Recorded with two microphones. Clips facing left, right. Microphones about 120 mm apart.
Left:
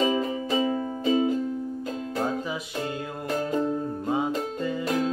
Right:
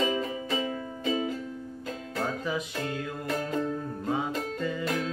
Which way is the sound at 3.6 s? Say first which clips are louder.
Left 4 dB; 20° left (ahead or behind).